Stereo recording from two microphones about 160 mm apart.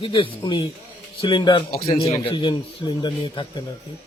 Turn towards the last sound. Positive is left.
turn(degrees=30)  # may be behind; listen again after turning